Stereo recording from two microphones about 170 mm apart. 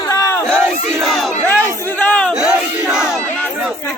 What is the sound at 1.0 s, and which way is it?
Battle cry, centre (ahead or behind).